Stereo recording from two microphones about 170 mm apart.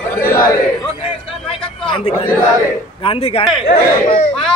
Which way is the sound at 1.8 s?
30° left (ahead or behind).